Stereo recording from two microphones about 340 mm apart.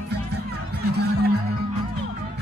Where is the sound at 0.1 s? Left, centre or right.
Right.